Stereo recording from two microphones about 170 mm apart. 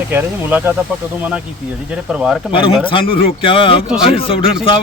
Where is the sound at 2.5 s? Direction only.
30° left (ahead or behind).